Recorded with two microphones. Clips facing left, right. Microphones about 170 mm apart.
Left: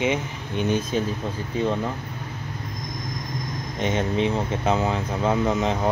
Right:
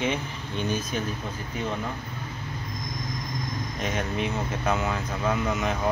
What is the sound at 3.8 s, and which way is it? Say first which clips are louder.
Speech: left 6 dB; 25° left (ahead or behind).